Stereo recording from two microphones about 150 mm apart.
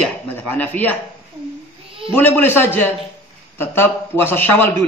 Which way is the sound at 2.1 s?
15° left (ahead or behind).